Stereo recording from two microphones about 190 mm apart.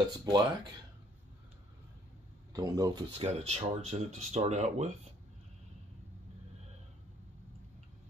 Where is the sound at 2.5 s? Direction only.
20° right (ahead or behind).